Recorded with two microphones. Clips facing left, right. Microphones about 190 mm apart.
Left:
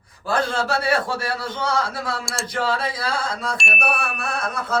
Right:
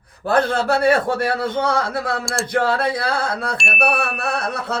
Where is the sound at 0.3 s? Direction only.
55° right (ahead or behind).